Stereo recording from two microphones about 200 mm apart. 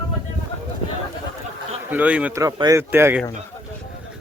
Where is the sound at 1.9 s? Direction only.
5° right (ahead or behind).